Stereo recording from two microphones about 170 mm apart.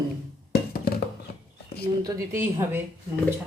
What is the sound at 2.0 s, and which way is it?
Speech, 20° right (ahead or behind).